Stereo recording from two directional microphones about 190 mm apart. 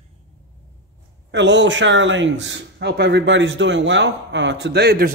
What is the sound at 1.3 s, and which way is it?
Speech, 65° right (ahead or behind).